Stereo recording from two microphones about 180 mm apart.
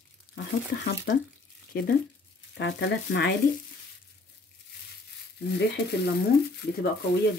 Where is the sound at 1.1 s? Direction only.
70° left (ahead or behind).